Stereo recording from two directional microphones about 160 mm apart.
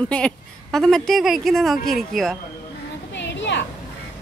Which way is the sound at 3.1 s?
90° left.